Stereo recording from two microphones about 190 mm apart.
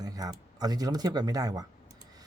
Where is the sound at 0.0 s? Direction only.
20° right (ahead or behind).